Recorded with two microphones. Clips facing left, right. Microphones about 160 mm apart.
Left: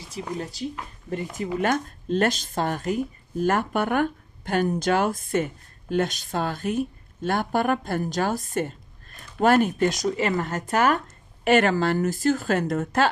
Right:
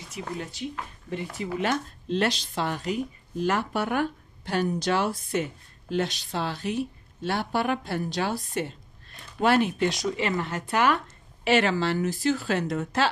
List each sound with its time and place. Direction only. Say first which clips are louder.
0.1 s speech: left 3 dB; 35° left (ahead or behind)
1.3 s speech: left 3 dB; 45° left (ahead or behind)